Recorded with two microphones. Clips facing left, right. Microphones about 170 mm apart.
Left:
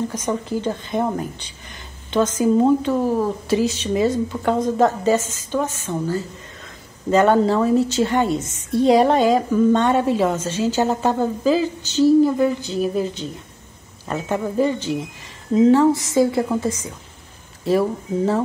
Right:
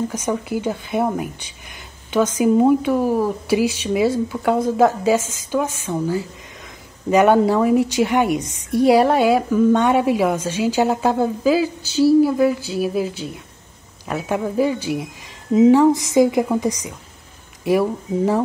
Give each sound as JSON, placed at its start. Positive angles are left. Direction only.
{"t": 0.1, "sound": "a woman's voice", "side_deg": -10}